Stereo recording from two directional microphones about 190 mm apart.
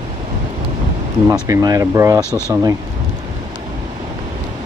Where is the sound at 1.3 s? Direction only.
20° right (ahead or behind).